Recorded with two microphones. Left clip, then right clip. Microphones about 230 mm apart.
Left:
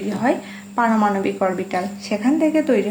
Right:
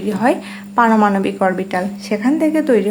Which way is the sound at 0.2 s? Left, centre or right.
Right.